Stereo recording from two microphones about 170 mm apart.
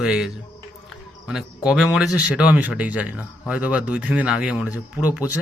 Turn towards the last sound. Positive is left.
turn(degrees=-5)  # may be behind; listen again after turning